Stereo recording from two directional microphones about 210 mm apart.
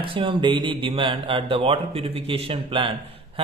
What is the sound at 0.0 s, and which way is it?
A man's voice, 25° right (ahead or behind).